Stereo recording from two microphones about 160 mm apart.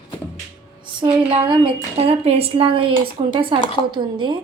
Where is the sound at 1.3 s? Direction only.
35° right (ahead or behind).